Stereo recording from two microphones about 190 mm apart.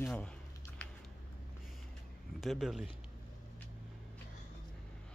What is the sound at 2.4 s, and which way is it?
Speech, centre (ahead or behind).